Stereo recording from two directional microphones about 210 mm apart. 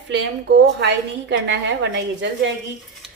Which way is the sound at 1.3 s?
55° right (ahead or behind).